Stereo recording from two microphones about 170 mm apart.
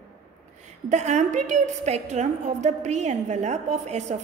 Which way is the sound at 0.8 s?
40° right (ahead or behind).